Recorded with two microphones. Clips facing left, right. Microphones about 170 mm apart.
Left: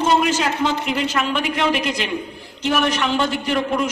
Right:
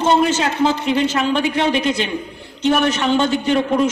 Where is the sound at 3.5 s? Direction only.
35° right (ahead or behind).